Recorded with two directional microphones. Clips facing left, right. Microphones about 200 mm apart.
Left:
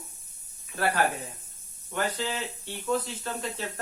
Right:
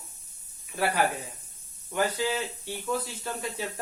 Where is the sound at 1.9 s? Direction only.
10° right (ahead or behind).